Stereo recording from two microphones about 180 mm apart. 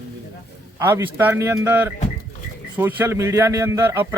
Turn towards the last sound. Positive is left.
turn(degrees=-15)  # may be behind; listen again after turning